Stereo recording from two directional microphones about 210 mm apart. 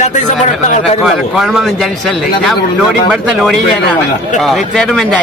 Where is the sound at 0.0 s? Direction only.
35° left (ahead or behind).